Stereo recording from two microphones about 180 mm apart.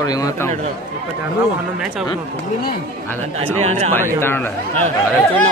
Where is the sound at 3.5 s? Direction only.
35° right (ahead or behind).